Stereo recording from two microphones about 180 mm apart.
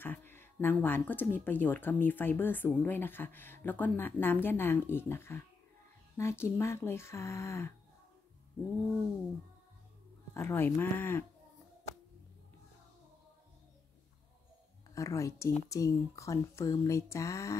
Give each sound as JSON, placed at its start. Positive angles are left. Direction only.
{"t": 0.0, "sound": "speech", "side_deg": 10}
{"t": 10.3, "sound": "speech", "side_deg": 15}
{"t": 15.0, "sound": "speech", "side_deg": 20}